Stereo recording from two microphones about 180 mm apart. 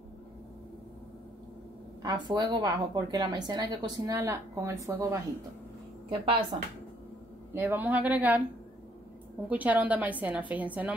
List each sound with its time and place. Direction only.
2.0 s a woman's voice: 25° right (ahead or behind)
7.5 s speech: 10° right (ahead or behind)
9.5 s speech: 10° right (ahead or behind)